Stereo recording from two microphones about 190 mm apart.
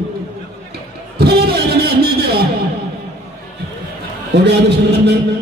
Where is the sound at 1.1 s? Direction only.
55° right (ahead or behind).